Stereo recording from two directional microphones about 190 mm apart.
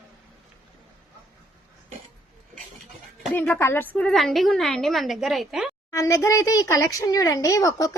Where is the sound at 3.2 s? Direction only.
10° left (ahead or behind).